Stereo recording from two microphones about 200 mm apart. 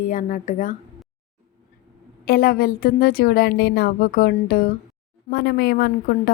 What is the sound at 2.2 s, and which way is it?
A woman's voice, 50° left (ahead or behind).